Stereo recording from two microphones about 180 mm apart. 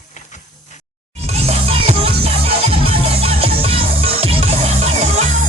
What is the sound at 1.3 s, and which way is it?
Music, 35° right (ahead or behind).